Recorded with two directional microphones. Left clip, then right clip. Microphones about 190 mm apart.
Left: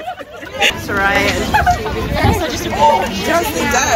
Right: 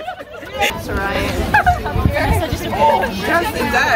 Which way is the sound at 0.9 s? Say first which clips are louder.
Left 6 dB; 40° left (ahead or behind).